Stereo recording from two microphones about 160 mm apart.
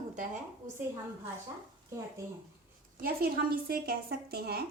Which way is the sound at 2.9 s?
70° right (ahead or behind).